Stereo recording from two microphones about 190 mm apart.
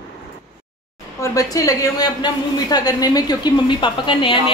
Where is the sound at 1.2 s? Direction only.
15° left (ahead or behind).